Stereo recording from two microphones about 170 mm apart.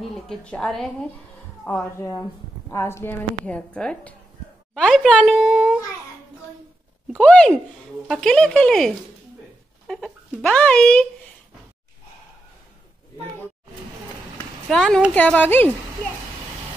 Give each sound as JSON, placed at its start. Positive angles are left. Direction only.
{"t": 0.1, "sound": "a child's voice", "side_deg": 5}
{"t": 1.7, "sound": "a woman's voice", "side_deg": 15}
{"t": 7.1, "sound": "a woman's voice", "side_deg": 5}
{"t": 14.7, "sound": "a child's voice", "side_deg": 5}